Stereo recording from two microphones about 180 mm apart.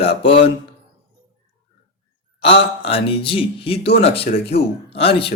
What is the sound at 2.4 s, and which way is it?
Speech, 30° left (ahead or behind).